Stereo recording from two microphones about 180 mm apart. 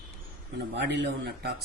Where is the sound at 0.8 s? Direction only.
70° right (ahead or behind).